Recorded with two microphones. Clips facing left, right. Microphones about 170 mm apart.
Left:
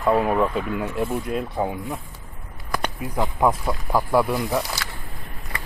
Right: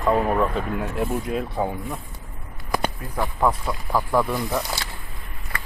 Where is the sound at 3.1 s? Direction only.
15° left (ahead or behind).